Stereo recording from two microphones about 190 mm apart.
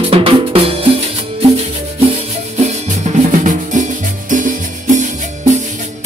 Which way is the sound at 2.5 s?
40° right (ahead or behind).